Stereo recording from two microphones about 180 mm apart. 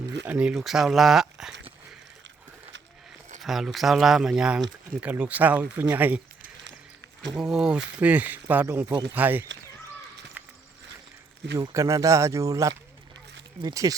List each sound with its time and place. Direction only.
0.3 s speech: 5° right (ahead or behind)
3.4 s speech: centre (ahead or behind)
7.3 s speech: 5° right (ahead or behind)
8.9 s speech: 20° right (ahead or behind)
9.1 s speech: 10° right (ahead or behind)
10.4 s a sound: 10° right (ahead or behind)
11.6 s speech: 15° right (ahead or behind)